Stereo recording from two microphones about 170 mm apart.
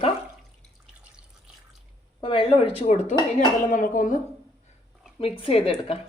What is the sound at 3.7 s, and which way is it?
Speech, 50° left (ahead or behind).